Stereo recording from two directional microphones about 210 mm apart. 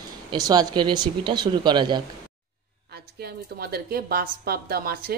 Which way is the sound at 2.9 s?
50° right (ahead or behind).